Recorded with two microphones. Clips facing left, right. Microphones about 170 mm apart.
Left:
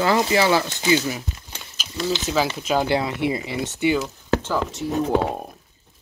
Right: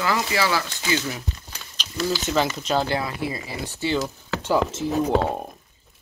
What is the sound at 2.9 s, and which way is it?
Speech, 25° left (ahead or behind).